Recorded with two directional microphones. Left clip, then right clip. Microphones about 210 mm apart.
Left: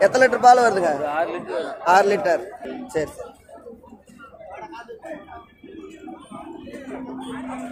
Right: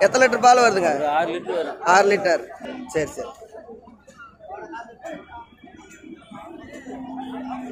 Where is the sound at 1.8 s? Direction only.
5° right (ahead or behind).